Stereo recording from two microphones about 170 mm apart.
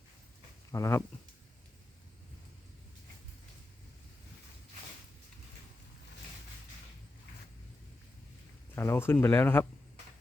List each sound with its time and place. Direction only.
0.7 s speech: 15° left (ahead or behind)
8.7 s speech: 15° left (ahead or behind)